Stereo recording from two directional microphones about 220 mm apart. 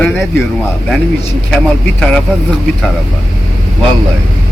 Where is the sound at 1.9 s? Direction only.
5° left (ahead or behind).